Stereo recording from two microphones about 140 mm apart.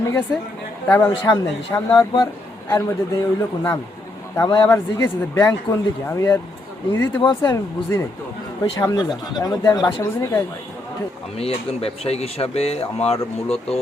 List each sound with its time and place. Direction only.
0.9 s speech: 15° left (ahead or behind)
1.2 s speech: 25° left (ahead or behind)
7.2 s speech: 30° left (ahead or behind)
7.9 s speech: 20° left (ahead or behind)
11.3 s speech: 45° left (ahead or behind)